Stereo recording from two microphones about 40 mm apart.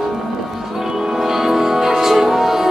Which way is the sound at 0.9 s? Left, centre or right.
Centre.